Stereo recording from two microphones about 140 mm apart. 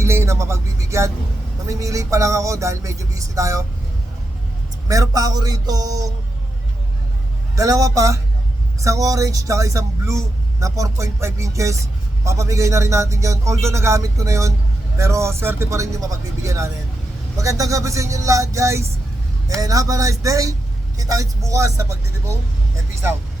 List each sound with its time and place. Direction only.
0.0 s speech: 20° right (ahead or behind)
4.9 s speech: 25° right (ahead or behind)
7.5 s speech: 25° right (ahead or behind)